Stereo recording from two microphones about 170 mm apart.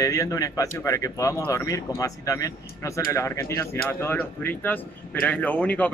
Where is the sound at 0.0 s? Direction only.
20° left (ahead or behind).